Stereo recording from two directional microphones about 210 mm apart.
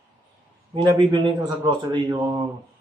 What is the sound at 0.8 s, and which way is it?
A man's voice, 20° right (ahead or behind).